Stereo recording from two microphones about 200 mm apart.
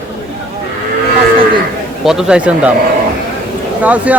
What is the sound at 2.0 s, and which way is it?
Speech, 5° right (ahead or behind).